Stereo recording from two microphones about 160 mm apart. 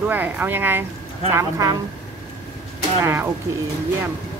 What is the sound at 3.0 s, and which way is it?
Speech, 15° right (ahead or behind).